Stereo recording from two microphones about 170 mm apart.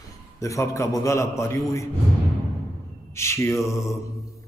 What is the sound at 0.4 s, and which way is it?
A man's voice, 20° left (ahead or behind).